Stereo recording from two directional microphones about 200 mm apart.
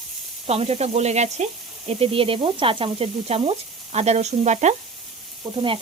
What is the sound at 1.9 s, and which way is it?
Sizzle, 30° right (ahead or behind).